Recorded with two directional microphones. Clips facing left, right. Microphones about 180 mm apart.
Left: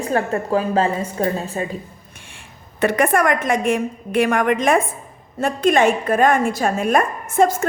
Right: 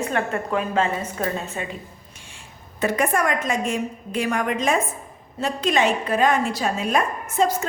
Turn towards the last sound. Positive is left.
turn(degrees=50)  # may be behind; listen again after turning